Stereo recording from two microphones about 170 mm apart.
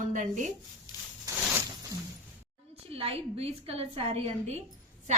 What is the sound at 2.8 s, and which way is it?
A woman's voice, 35° right (ahead or behind).